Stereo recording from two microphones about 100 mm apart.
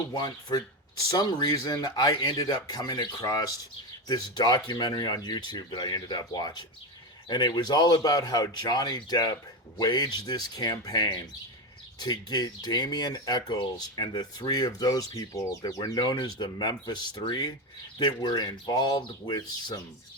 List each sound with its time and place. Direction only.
0.1 s speech: 45° left (ahead or behind)
15.8 s speech: 45° left (ahead or behind)